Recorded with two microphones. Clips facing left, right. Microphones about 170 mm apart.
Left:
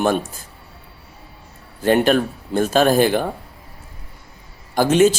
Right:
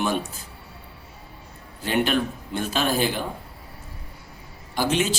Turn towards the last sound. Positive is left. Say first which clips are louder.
# left 9 dB
turn(degrees=45)  # may be behind; listen again after turning